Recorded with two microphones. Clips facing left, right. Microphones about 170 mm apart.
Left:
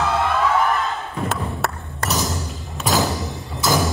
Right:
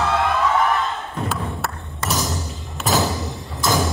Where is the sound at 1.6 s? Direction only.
Centre (ahead or behind).